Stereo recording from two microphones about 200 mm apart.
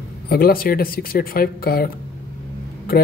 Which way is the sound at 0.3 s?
45° left (ahead or behind).